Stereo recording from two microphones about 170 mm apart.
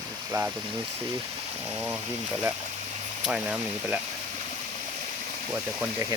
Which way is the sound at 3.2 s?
5° right (ahead or behind).